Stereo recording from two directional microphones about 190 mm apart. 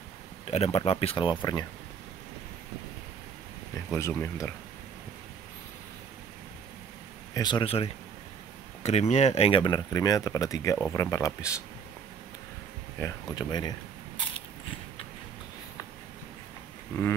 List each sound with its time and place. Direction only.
0.5 s speech: 35° left (ahead or behind)
3.9 s speech: 15° left (ahead or behind)
7.3 s speech: 25° left (ahead or behind)
13.0 s speech: 20° left (ahead or behind)